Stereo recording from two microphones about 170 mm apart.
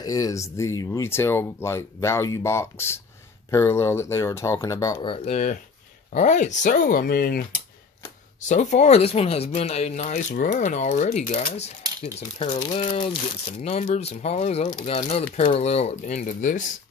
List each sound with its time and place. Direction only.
0.0 s speech: 20° left (ahead or behind)
5.0 s speech: 35° left (ahead or behind); by 7.4 s 60° left (ahead or behind)
8.4 s speech: 45° left (ahead or behind)
12.9 s speech: 30° left (ahead or behind)
13.6 s speech: 40° left (ahead or behind)